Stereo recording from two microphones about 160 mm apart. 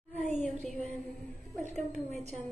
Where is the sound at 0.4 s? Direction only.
Centre (ahead or behind).